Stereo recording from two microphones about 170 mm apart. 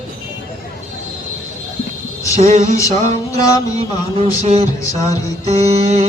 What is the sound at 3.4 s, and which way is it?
Mantra, 20° left (ahead or behind).